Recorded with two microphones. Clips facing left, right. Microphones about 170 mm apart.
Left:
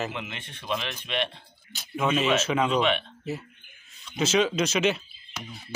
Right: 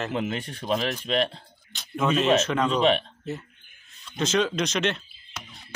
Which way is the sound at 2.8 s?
35° right (ahead or behind).